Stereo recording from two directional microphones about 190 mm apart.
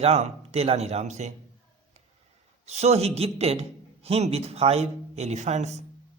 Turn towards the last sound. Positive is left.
turn(degrees=-35)  # may be behind; listen again after turning